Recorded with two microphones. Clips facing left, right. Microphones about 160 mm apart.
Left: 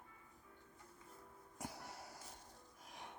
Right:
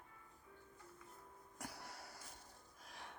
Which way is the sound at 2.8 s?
15° left (ahead or behind).